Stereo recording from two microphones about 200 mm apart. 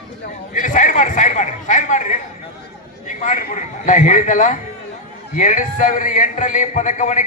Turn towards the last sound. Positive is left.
turn(degrees=40)  # may be behind; listen again after turning